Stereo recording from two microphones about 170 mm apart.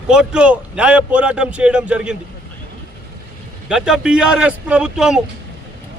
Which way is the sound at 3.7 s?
5° right (ahead or behind).